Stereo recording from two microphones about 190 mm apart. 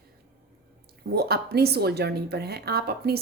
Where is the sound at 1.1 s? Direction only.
55° right (ahead or behind).